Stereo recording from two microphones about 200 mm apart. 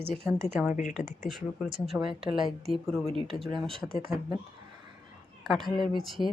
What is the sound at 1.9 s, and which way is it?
Speech, centre (ahead or behind).